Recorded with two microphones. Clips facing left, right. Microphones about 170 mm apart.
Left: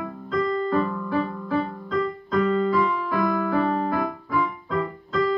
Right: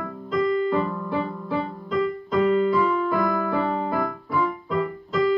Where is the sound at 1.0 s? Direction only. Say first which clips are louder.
Left 1 dB; 25° right (ahead or behind).